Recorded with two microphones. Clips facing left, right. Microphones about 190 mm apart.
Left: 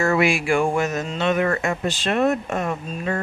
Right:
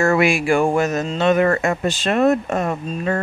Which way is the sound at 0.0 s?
50° right (ahead or behind).